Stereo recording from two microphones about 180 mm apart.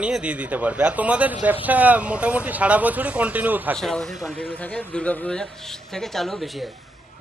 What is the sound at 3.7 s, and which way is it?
Speech, 5° left (ahead or behind).